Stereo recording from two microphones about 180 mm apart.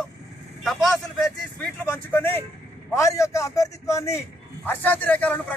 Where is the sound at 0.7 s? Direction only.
Centre (ahead or behind).